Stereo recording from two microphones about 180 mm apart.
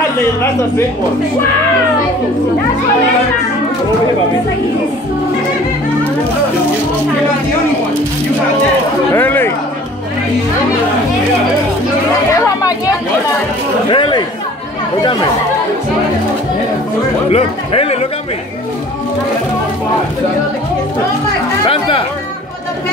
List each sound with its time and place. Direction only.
9.1 s speech: 10° left (ahead or behind)
12.4 s chatter: 20° left (ahead or behind)
13.8 s speech: 25° left (ahead or behind)
17.3 s speech: 35° left (ahead or behind)
21.6 s speech: 30° left (ahead or behind)